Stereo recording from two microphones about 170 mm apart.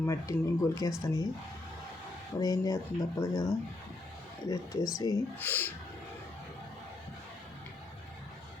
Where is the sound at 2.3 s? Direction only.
20° left (ahead or behind).